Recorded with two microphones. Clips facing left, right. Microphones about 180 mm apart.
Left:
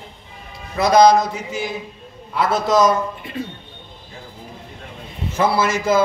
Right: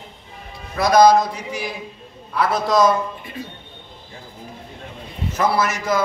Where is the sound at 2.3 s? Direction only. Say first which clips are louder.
Left 1 dB; 25° left (ahead or behind).